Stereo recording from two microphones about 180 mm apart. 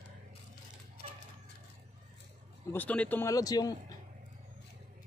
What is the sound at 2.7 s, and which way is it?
Speech, 10° left (ahead or behind).